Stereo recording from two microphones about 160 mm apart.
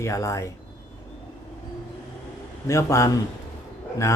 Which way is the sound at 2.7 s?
20° left (ahead or behind).